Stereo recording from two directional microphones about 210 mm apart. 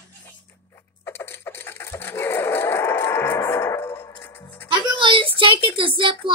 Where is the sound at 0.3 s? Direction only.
10° left (ahead or behind).